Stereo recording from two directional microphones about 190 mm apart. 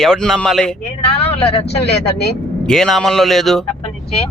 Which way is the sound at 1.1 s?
30° left (ahead or behind).